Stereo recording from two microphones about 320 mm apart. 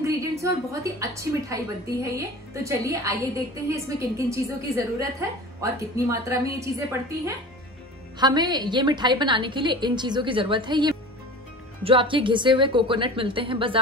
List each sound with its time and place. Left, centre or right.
0.0 s a woman's voice: centre
4.3 s a woman's voice: centre